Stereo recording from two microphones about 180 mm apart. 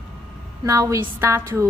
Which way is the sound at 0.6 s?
15° right (ahead or behind).